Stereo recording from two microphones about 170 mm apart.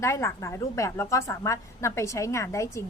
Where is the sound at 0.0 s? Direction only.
15° left (ahead or behind).